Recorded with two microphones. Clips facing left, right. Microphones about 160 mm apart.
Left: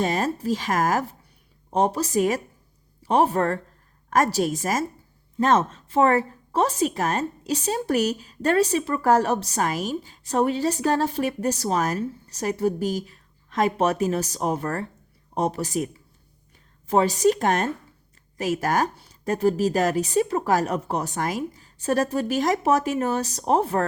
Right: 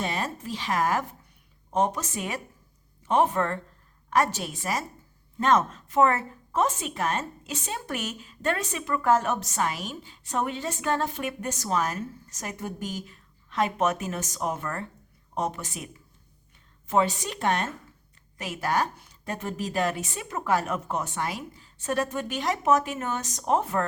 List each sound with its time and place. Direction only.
0.0 s a woman's voice: 40° left (ahead or behind)
16.9 s a woman's voice: 40° left (ahead or behind)